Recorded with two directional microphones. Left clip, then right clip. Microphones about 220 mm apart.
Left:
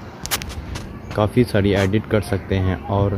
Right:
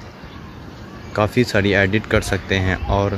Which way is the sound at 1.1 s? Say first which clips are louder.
Right 1 dB; centre (ahead or behind).